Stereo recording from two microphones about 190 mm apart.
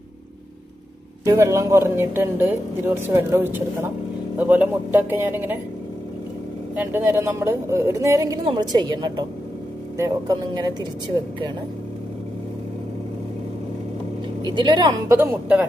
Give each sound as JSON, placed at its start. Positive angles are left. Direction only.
{"t": 1.2, "sound": "speech", "side_deg": -15}
{"t": 6.7, "sound": "speech", "side_deg": -10}
{"t": 14.4, "sound": "speech", "side_deg": -25}
{"t": 15.1, "sound": "speech", "side_deg": -10}